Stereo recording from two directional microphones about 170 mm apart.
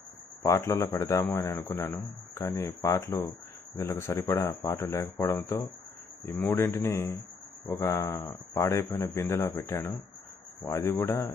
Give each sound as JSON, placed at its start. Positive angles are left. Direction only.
{"t": 0.4, "sound": "a man's voice", "side_deg": 15}